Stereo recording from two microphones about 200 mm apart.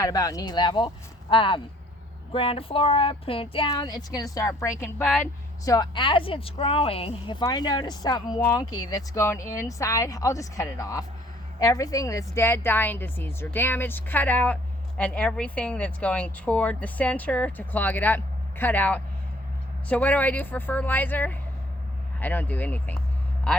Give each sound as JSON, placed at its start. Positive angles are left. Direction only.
{"t": 0.0, "sound": "a woman's voice", "side_deg": 20}
{"t": 5.6, "sound": "a woman's voice", "side_deg": 20}